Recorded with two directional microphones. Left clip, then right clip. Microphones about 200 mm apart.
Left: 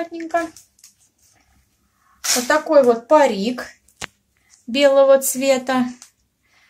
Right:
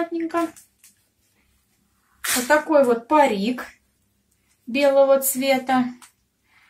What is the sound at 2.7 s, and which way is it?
Speech, 45° left (ahead or behind).